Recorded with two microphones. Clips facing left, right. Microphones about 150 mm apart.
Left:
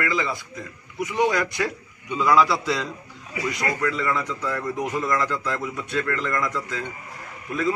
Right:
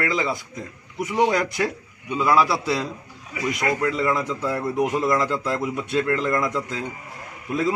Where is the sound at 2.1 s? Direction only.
10° right (ahead or behind).